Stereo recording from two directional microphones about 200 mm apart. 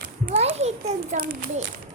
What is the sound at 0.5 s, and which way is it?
Speech, 35° right (ahead or behind).